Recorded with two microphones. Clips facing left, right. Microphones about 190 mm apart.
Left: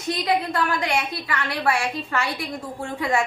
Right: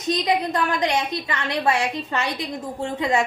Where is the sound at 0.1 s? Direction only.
20° right (ahead or behind).